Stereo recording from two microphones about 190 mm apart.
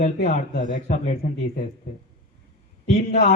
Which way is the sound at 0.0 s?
40° left (ahead or behind).